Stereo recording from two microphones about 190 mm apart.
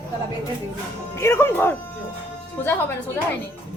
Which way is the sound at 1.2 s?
15° left (ahead or behind).